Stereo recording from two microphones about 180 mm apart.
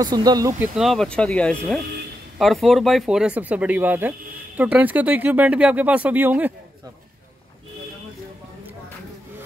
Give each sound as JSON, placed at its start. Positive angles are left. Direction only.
{"t": 0.0, "sound": "speech", "side_deg": -20}
{"t": 0.7, "sound": "speech", "side_deg": 0}